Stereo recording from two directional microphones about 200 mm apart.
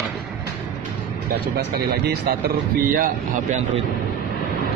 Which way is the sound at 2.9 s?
45° right (ahead or behind).